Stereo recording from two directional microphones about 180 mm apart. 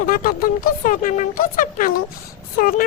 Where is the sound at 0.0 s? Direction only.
50° left (ahead or behind).